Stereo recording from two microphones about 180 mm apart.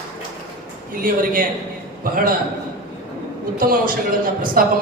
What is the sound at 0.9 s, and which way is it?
A woman's voice, 50° right (ahead or behind).